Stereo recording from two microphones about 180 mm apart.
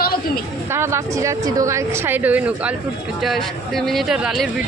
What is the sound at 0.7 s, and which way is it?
Speech, 15° right (ahead or behind).